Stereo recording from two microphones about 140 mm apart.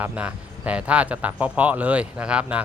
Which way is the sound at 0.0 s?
10° right (ahead or behind).